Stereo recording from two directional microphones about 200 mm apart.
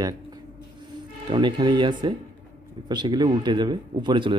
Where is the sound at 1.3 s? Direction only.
25° right (ahead or behind).